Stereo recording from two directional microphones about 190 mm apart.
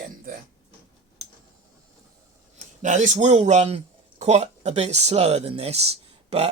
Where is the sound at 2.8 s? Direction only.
40° right (ahead or behind).